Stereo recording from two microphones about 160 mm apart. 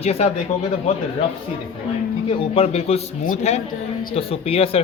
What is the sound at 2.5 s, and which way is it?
Speech, 40° left (ahead or behind).